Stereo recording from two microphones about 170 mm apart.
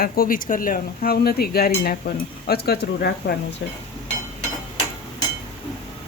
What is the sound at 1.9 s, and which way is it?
Stir, 65° left (ahead or behind).